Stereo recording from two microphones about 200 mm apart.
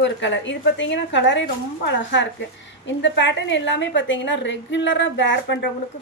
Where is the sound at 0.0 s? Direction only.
65° left (ahead or behind).